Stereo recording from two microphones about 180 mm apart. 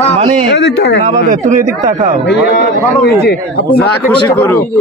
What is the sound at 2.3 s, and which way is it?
Speech, 75° left (ahead or behind).